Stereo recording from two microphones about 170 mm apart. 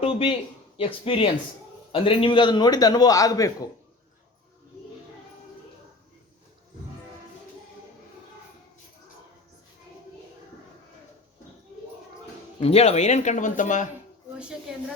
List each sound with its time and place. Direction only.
0.0 s a sound: 30° left (ahead or behind)
0.8 s a man's voice: 35° left (ahead or behind)
12.6 s speech: 40° left (ahead or behind)